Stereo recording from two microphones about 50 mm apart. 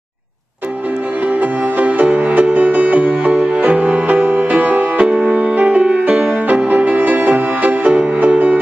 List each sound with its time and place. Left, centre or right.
1.4 s music: right